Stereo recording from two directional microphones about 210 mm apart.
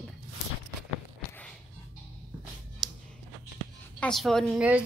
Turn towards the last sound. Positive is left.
turn(degrees=-5)  # may be behind; listen again after turning